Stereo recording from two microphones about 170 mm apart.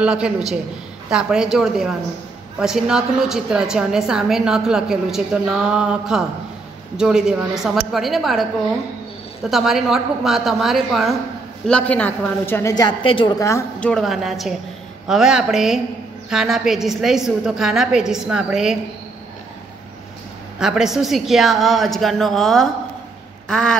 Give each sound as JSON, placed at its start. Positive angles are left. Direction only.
{"t": 0.0, "sound": "a woman's voice", "side_deg": -5}
{"t": 13.4, "sound": "a woman's voice", "side_deg": 15}
{"t": 20.5, "sound": "a woman's voice", "side_deg": -5}